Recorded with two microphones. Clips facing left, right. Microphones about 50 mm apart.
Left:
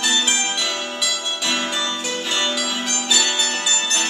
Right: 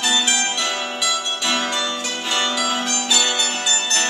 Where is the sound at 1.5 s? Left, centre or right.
Centre.